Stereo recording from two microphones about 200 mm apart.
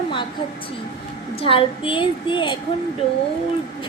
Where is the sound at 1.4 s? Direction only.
25° left (ahead or behind).